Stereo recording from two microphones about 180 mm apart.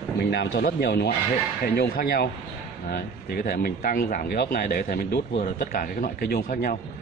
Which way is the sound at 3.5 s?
55° left (ahead or behind).